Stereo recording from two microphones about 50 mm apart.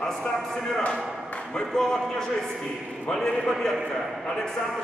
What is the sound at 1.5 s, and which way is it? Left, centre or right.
Speech, centre.